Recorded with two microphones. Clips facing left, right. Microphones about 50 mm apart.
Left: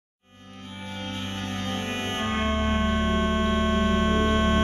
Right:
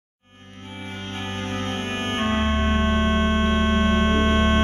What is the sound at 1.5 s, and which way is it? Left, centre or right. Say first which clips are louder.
Music: right 2 dB; right.